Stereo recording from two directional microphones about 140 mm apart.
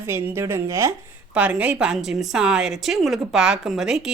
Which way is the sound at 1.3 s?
10° right (ahead or behind).